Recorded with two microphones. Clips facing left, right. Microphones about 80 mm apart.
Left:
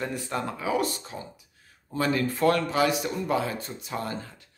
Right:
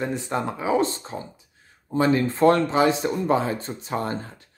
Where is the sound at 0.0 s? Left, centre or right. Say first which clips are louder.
Right 4 dB; right.